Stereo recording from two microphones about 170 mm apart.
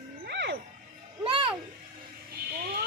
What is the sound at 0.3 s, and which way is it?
Music, 90° right.